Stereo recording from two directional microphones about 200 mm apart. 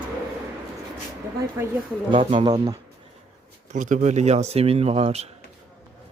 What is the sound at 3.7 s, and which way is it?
Speech, 40° right (ahead or behind).